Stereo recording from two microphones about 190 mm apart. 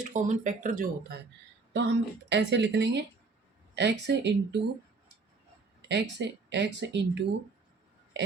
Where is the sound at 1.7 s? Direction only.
65° right (ahead or behind).